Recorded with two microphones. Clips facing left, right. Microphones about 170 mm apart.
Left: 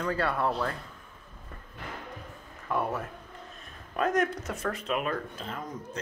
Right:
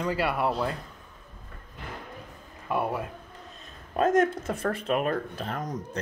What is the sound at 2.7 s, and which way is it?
Speech, 15° right (ahead or behind).